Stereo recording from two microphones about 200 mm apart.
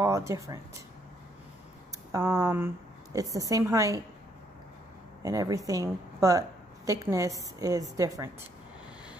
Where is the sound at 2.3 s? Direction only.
15° right (ahead or behind).